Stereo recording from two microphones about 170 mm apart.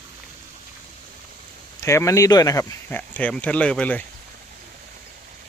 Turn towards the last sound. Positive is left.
turn(degrees=10)  # may be behind; listen again after turning